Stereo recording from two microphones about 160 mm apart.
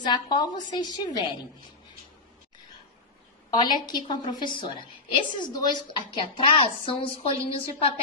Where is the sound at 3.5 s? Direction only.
25° left (ahead or behind).